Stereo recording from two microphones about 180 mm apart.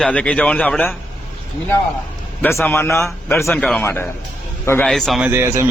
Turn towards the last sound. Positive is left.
turn(degrees=-15)  # may be behind; listen again after turning